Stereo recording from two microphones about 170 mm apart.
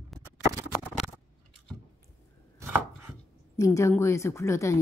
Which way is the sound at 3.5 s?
15° left (ahead or behind).